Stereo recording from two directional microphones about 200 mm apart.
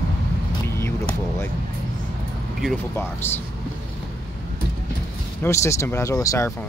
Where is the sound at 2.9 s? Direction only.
10° left (ahead or behind).